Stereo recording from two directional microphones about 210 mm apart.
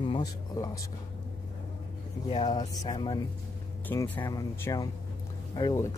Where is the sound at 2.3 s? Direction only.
20° left (ahead or behind).